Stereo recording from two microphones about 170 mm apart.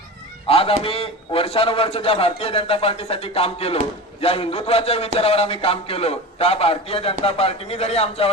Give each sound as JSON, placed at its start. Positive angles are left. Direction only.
{"t": 0.4, "sound": "a man's voice", "side_deg": 35}